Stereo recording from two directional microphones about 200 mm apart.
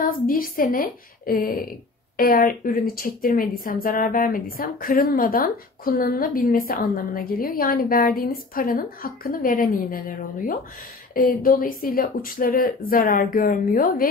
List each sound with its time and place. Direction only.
0.3 s a woman's voice: 45° left (ahead or behind)